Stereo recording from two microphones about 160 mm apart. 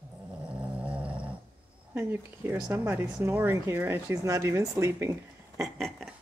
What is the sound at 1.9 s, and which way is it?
Speech, 15° right (ahead or behind).